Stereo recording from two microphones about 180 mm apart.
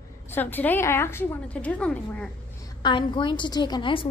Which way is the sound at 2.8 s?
25° left (ahead or behind).